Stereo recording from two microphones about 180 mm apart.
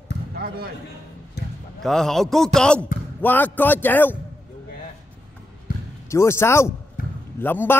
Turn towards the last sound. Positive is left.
turn(degrees=10)  # may be behind; listen again after turning